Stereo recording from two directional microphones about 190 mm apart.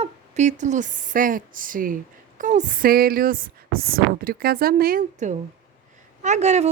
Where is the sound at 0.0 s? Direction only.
40° right (ahead or behind).